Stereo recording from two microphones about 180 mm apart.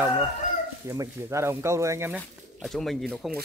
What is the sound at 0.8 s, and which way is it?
Speech, 15° right (ahead or behind).